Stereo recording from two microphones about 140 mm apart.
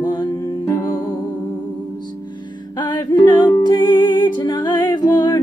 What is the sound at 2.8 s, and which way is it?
Music, 30° left (ahead or behind).